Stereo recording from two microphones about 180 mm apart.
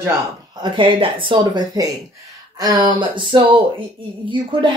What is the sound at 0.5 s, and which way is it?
Speech, 25° right (ahead or behind).